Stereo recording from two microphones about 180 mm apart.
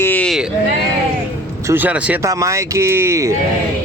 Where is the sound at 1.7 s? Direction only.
10° right (ahead or behind).